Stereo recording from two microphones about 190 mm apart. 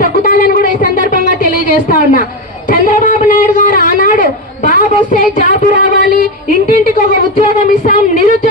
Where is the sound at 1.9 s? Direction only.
45° left (ahead or behind).